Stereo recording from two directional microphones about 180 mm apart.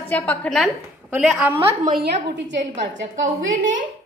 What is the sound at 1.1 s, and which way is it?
Speech, 10° right (ahead or behind).